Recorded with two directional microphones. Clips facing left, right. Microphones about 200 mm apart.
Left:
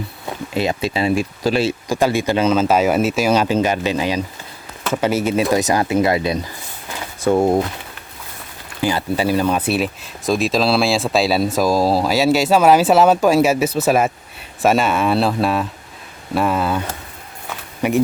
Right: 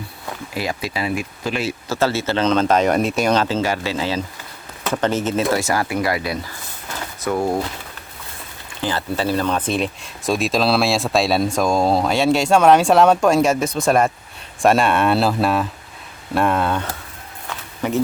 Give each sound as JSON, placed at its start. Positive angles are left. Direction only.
{"t": 0.5, "sound": "speech", "side_deg": 25}
{"t": 1.9, "sound": "speech", "side_deg": 15}
{"t": 8.8, "sound": "speech", "side_deg": 10}